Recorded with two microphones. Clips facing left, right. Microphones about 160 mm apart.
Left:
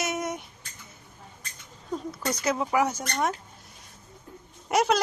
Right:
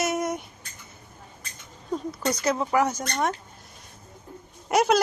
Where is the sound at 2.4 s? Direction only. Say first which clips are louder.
Right 1 dB; 5° left (ahead or behind).